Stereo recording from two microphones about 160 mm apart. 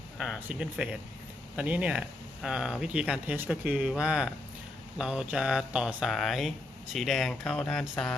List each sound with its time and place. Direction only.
0.2 s speech: 5° right (ahead or behind)